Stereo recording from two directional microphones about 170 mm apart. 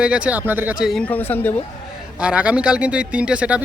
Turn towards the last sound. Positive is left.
turn(degrees=-5)  # may be behind; listen again after turning